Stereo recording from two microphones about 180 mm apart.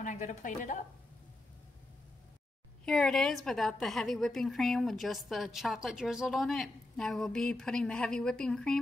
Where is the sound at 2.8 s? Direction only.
5° left (ahead or behind).